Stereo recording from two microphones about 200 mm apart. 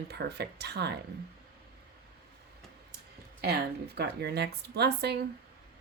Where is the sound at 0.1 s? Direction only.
55° right (ahead or behind).